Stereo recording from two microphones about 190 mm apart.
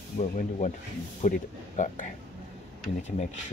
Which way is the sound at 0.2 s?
40° left (ahead or behind).